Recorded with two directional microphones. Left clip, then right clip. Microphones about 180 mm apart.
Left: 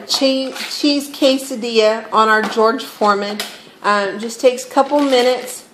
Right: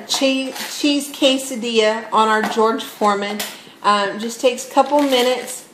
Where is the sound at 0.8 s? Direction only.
25° left (ahead or behind).